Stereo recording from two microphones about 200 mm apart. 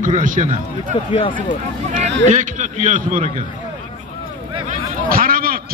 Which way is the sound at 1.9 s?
35° right (ahead or behind).